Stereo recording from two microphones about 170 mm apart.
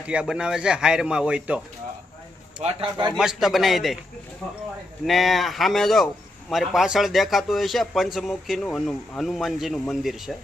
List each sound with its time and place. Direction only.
0.1 s a man's voice: 5° right (ahead or behind)
2.6 s a man's voice: 40° right (ahead or behind)
3.1 s a man's voice: centre (ahead or behind)
5.0 s a man's voice: centre (ahead or behind)